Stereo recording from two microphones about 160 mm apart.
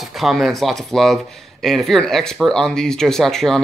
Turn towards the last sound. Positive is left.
turn(degrees=0)  # may be behind; listen again after turning